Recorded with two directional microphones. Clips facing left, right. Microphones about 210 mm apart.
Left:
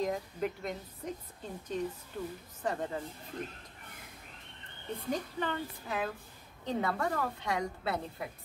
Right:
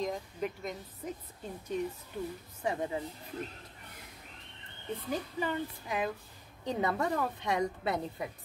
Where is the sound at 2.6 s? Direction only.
10° right (ahead or behind).